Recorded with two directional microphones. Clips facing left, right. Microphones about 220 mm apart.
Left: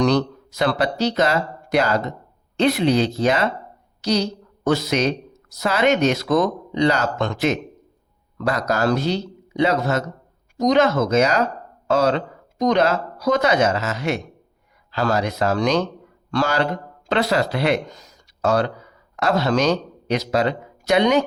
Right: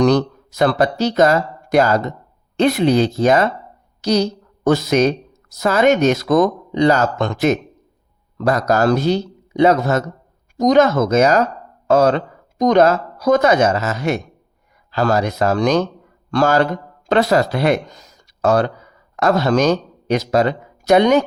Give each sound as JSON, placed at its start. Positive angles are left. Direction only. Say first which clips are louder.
{"t": 0.0, "sound": "a woman's voice", "louder": "right 4 dB", "side_deg": -45}